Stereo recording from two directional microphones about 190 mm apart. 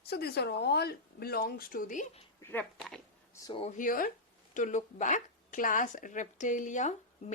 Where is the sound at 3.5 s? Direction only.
35° left (ahead or behind).